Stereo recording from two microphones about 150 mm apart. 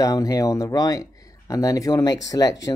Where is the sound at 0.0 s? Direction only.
25° left (ahead or behind).